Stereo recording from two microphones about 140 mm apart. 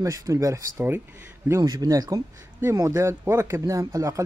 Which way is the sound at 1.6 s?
30° right (ahead or behind).